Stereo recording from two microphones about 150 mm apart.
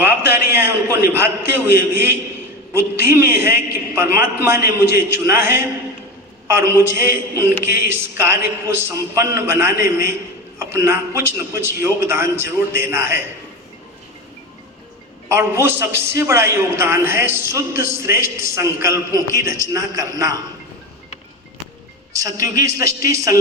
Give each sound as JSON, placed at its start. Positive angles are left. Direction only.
{"t": 0.0, "sound": "a man's voice", "side_deg": -15}
{"t": 15.3, "sound": "a man's voice", "side_deg": -15}
{"t": 22.1, "sound": "a man's voice", "side_deg": -20}